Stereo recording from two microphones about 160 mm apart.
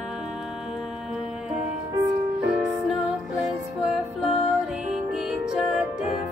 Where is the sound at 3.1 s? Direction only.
5° right (ahead or behind).